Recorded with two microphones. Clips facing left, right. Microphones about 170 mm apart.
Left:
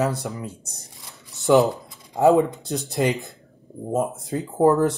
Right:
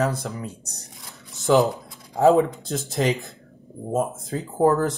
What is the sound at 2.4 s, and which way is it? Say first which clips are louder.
Speech: even; centre (ahead or behind).